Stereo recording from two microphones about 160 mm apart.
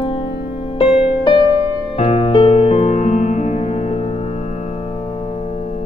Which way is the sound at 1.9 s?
40° left (ahead or behind).